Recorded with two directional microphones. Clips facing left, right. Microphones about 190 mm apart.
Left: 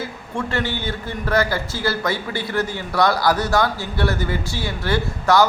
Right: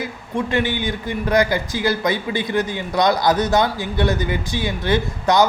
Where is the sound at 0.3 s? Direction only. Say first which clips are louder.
Right 4 dB; 15° right (ahead or behind).